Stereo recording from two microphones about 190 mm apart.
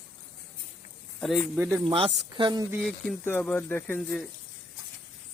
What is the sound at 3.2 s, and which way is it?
Speech, 10° left (ahead or behind).